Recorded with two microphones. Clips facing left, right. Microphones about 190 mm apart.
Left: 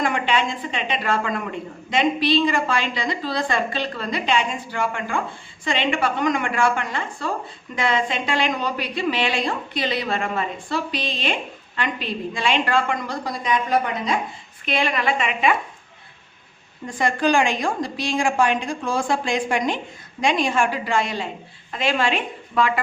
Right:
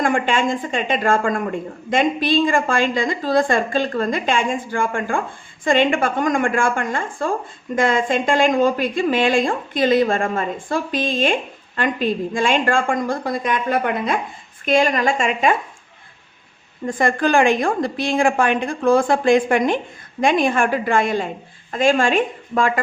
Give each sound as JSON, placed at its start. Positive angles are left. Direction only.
{"t": 0.0, "sound": "a woman's voice", "side_deg": -50}
{"t": 14.6, "sound": "a woman's voice", "side_deg": -45}
{"t": 16.8, "sound": "a woman's voice", "side_deg": -50}